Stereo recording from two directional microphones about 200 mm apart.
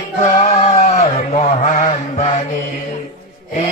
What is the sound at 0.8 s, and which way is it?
Mantra, 30° left (ahead or behind).